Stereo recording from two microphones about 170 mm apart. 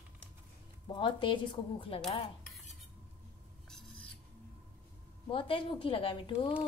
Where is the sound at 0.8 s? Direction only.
30° left (ahead or behind).